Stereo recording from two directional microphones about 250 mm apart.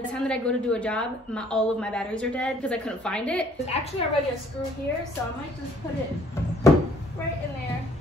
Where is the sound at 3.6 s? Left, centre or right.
Left.